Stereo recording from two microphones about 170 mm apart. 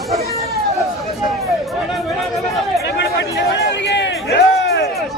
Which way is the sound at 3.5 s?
90° left.